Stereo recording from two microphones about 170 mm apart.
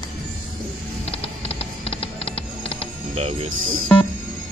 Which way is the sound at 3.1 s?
35° right (ahead or behind).